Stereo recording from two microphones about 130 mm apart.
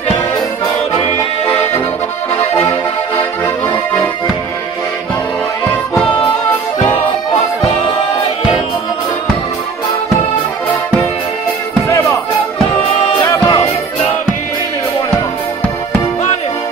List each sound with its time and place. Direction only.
3.7 s accordion: 30° left (ahead or behind)
7.3 s music: 55° left (ahead or behind)
13.3 s music: 30° left (ahead or behind)